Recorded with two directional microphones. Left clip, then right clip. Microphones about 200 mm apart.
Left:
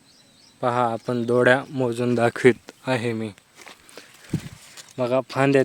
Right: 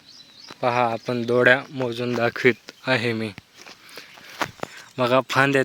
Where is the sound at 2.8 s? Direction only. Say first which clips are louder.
Right 2 dB; 10° left (ahead or behind).